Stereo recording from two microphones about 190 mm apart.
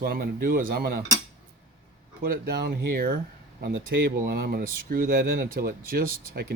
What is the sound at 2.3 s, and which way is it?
Speech, 60° right (ahead or behind).